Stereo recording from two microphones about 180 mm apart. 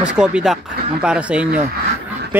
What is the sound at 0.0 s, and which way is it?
Speech, 5° right (ahead or behind).